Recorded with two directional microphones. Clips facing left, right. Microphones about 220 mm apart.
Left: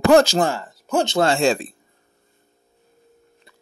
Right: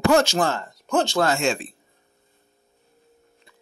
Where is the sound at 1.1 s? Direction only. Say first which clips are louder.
Left 4 dB; 25° left (ahead or behind).